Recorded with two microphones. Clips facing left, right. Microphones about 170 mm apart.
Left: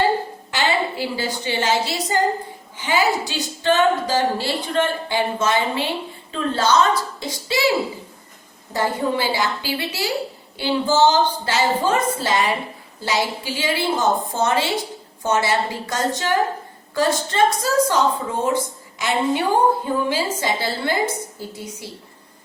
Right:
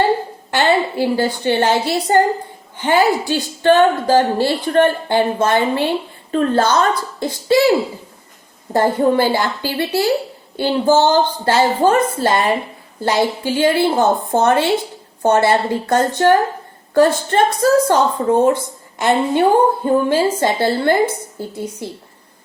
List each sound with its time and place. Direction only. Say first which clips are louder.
0.5 s a woman's voice: right 6 dB; 55° right (ahead or behind)
8.7 s a woman's voice: right 7 dB; 50° right (ahead or behind)